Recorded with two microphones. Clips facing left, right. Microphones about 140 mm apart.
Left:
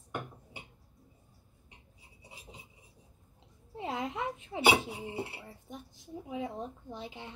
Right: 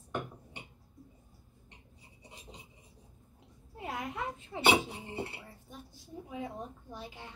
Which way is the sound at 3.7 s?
25° left (ahead or behind).